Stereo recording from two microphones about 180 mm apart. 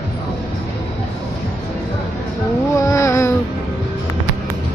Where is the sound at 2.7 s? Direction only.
15° left (ahead or behind).